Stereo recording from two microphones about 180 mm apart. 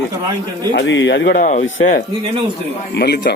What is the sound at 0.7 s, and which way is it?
Speech, 85° left.